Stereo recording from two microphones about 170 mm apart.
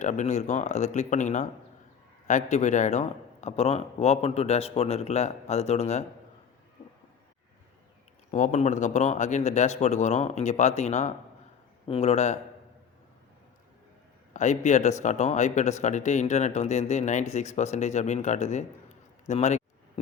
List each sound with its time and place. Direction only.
0.0 s a man's voice: 45° left (ahead or behind)
8.3 s a man's voice: 45° left (ahead or behind)
14.3 s speech: 45° left (ahead or behind)